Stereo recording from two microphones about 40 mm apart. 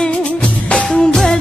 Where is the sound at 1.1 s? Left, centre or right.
Centre.